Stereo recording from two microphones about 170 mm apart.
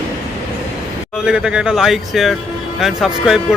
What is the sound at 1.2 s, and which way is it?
Speech, 5° right (ahead or behind).